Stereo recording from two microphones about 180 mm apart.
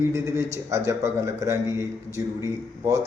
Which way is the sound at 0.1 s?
15° right (ahead or behind).